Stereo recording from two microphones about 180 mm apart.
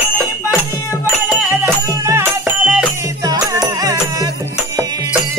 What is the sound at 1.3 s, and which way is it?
Music, 10° right (ahead or behind).